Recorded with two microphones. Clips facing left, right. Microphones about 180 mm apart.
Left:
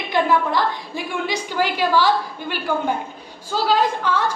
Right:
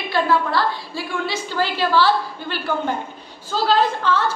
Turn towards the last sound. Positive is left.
turn(degrees=10)  # may be behind; listen again after turning